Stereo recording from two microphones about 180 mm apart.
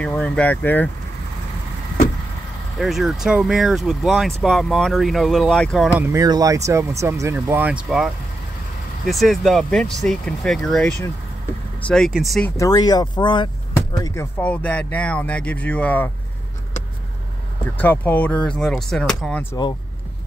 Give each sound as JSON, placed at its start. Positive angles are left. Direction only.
{"t": 0.0, "sound": "speech", "side_deg": 5}
{"t": 2.8, "sound": "speech", "side_deg": 0}
{"t": 5.9, "sound": "speech", "side_deg": -15}
{"t": 12.5, "sound": "speech", "side_deg": 20}
{"t": 14.4, "sound": "speech", "side_deg": 5}
{"t": 17.7, "sound": "speech", "side_deg": 10}